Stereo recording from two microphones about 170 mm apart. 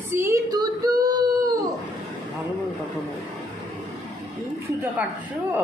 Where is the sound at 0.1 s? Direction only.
15° right (ahead or behind).